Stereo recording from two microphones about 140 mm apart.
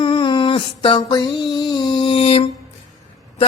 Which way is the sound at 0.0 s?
35° left (ahead or behind).